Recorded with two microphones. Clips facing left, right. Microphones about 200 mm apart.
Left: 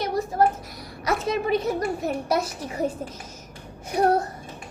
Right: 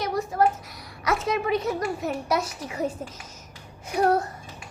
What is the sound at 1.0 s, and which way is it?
A child's voice, 30° left (ahead or behind).